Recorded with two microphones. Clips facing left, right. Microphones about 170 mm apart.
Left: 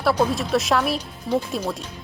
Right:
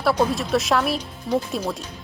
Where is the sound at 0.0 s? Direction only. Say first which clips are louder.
Even; centre (ahead or behind).